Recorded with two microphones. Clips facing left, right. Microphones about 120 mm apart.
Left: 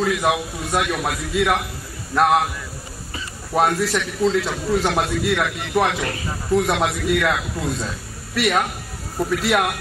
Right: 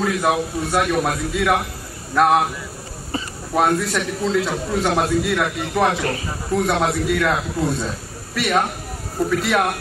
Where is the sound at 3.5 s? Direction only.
Centre (ahead or behind).